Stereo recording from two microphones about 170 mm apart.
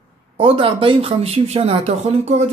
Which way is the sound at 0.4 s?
30° right (ahead or behind).